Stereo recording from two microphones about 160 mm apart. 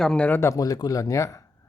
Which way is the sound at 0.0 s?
5° left (ahead or behind).